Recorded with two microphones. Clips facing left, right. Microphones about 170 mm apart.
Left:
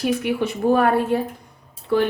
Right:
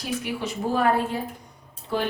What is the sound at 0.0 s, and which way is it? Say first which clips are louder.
A woman's voice: left 8 dB; 60° left (ahead or behind).